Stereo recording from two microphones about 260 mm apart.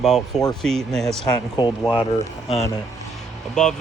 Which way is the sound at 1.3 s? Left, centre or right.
Centre.